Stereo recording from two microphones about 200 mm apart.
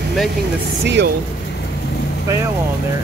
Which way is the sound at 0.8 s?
60° right (ahead or behind).